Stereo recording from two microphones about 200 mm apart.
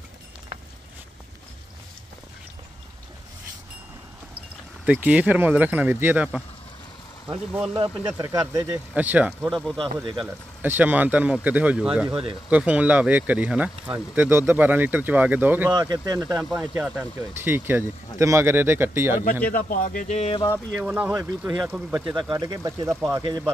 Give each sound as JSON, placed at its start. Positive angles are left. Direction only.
{"t": 4.8, "sound": "speech", "side_deg": -5}
{"t": 7.7, "sound": "speech", "side_deg": -20}
{"t": 16.3, "sound": "speech", "side_deg": -5}
{"t": 19.5, "sound": "speech", "side_deg": 40}
{"t": 20.7, "sound": "speech", "side_deg": -5}
{"t": 22.3, "sound": "speech", "side_deg": -20}